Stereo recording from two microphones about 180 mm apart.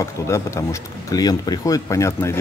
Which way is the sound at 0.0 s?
15° left (ahead or behind).